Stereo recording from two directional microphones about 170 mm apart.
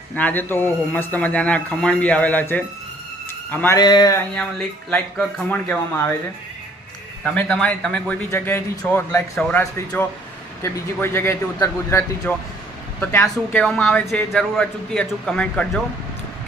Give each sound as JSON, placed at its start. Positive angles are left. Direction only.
{"t": 0.2, "sound": "speech", "side_deg": 10}
{"t": 3.8, "sound": "a sound", "side_deg": 25}
{"t": 4.4, "sound": "speech", "side_deg": 5}
{"t": 7.3, "sound": "speech", "side_deg": 10}
{"t": 8.3, "sound": "a man's voice", "side_deg": 15}